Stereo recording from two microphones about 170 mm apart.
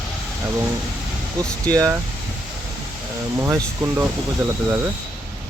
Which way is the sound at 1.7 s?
20° right (ahead or behind).